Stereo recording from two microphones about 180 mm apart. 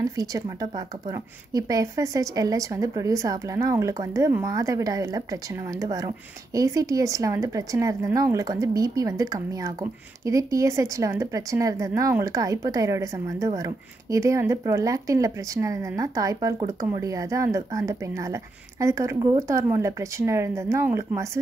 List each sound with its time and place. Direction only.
0.1 s speech: 20° right (ahead or behind)